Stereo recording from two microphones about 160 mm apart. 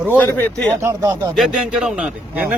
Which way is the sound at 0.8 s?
15° right (ahead or behind).